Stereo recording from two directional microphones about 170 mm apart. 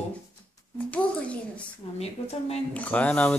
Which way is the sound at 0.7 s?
10° left (ahead or behind).